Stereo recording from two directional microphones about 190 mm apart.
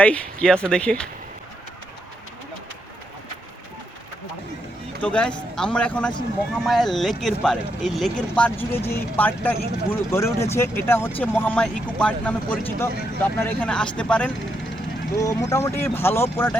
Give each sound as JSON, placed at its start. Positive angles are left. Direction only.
{"t": 0.0, "sound": "speech", "side_deg": 5}
{"t": 5.0, "sound": "speech", "side_deg": 5}
{"t": 15.2, "sound": "speech", "side_deg": 15}